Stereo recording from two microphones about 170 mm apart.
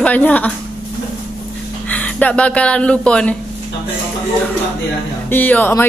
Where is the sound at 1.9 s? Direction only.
10° left (ahead or behind).